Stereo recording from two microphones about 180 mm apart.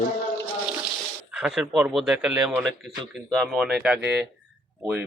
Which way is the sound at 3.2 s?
5° left (ahead or behind).